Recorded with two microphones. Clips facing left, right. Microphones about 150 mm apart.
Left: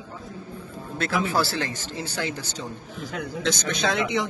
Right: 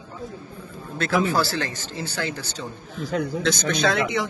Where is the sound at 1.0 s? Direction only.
20° left (ahead or behind).